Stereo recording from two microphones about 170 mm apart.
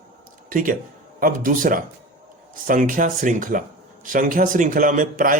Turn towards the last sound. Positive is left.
turn(degrees=-50)  # may be behind; listen again after turning